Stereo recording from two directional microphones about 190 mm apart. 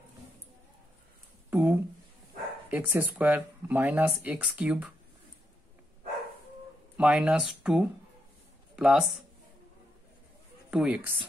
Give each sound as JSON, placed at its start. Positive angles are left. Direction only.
{"t": 1.5, "sound": "a sound", "side_deg": -10}
{"t": 2.7, "sound": "speech", "side_deg": -10}
{"t": 7.0, "sound": "speech", "side_deg": -5}
{"t": 10.7, "sound": "speech", "side_deg": -5}